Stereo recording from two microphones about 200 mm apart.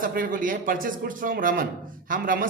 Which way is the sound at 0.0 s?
45° right (ahead or behind).